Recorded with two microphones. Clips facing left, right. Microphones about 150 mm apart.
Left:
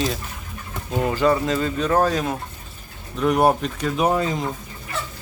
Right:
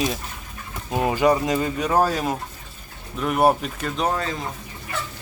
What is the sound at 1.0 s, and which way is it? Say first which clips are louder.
Speech: even; 15° right (ahead or behind).